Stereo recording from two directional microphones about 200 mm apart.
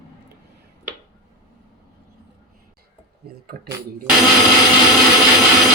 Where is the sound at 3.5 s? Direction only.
45° right (ahead or behind).